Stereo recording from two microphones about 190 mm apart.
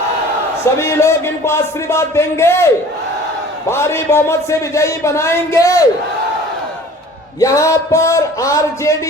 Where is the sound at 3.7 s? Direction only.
15° left (ahead or behind).